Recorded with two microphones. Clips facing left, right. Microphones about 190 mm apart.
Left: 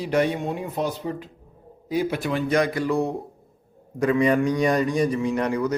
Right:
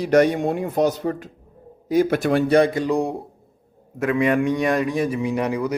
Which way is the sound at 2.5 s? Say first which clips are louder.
Right 4 dB; 30° right (ahead or behind).